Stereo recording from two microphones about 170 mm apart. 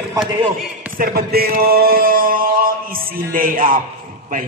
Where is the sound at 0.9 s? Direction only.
60° right (ahead or behind).